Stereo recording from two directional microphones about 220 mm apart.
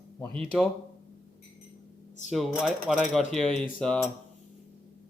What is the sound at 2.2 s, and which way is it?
Speech, centre (ahead or behind).